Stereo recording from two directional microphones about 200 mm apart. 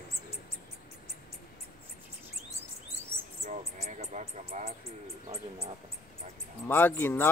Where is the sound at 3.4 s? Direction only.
35° right (ahead or behind).